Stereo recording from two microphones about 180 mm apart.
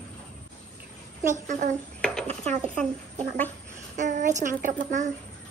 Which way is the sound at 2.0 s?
5° left (ahead or behind).